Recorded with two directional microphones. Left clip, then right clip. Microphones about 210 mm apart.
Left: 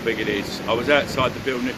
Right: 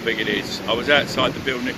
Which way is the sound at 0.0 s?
15° left (ahead or behind).